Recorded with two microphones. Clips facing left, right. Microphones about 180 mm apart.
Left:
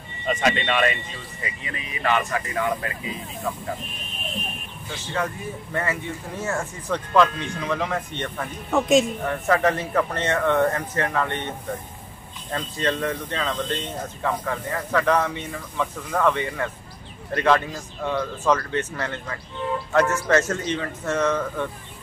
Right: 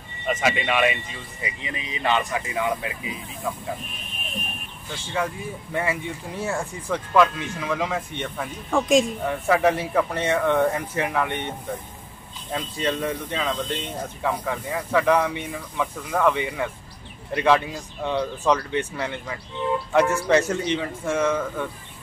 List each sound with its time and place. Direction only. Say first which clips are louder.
0.3 s speech: left 1 dB; 5° right (ahead or behind)
5.1 s speech: even; 10° right (ahead or behind)
8.6 s speech: left 1 dB; 5° left (ahead or behind)
9.2 s speech: right 1 dB; 10° right (ahead or behind)